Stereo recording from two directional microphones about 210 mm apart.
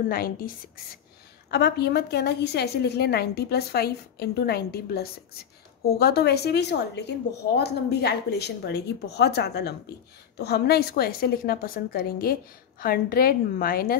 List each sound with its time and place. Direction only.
0.1 s a woman's voice: 45° left (ahead or behind)
1.5 s a woman's voice: 50° left (ahead or behind)